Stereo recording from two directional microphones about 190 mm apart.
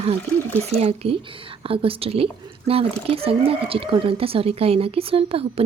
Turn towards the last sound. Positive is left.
turn(degrees=-30)  # may be behind; listen again after turning